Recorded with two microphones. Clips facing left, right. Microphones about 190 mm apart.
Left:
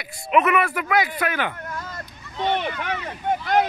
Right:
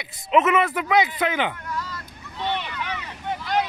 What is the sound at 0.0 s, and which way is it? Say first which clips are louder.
Speech: even; 20° right (ahead or behind).